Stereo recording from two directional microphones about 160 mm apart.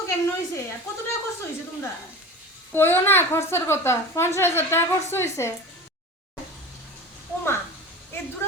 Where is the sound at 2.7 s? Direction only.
15° left (ahead or behind).